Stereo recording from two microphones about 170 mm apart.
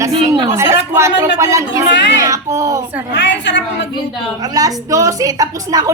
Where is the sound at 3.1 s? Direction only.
90° left.